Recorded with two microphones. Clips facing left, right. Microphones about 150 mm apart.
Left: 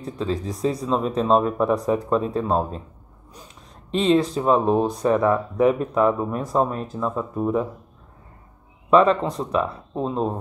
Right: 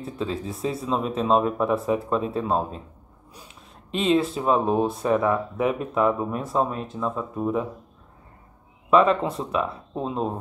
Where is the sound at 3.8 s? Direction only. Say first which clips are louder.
Left 3 dB; 30° left (ahead or behind).